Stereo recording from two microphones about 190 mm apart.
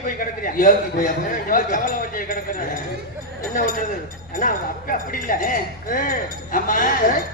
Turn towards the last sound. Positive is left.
turn(degrees=50)  # may be behind; listen again after turning